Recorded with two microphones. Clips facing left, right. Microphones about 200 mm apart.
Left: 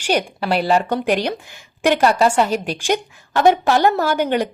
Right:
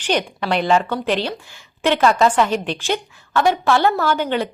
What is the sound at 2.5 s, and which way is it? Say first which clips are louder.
A woman's voice: left 1 dB; 10° left (ahead or behind).